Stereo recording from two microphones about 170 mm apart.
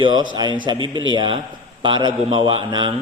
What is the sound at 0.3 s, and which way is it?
A man's voice, 25° right (ahead or behind).